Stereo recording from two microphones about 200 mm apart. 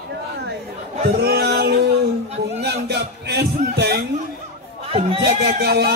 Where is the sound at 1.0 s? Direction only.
50° right (ahead or behind).